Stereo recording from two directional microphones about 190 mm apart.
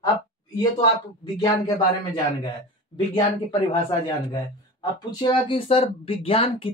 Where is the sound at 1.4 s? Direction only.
20° left (ahead or behind).